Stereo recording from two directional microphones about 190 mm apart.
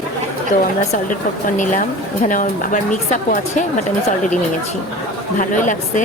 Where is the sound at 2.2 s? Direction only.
45° left (ahead or behind).